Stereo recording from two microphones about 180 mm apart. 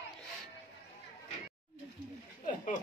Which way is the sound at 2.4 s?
45° left (ahead or behind).